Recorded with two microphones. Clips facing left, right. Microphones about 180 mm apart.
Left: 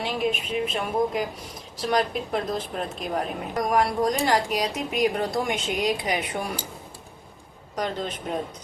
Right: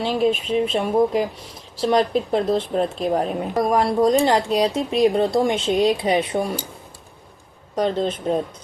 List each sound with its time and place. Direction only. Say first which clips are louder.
0.0 s speech: right 7 dB; 30° right (ahead or behind)
7.8 s speech: right 8 dB; 30° right (ahead or behind)